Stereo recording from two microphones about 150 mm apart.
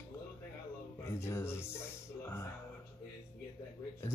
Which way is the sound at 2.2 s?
20° left (ahead or behind).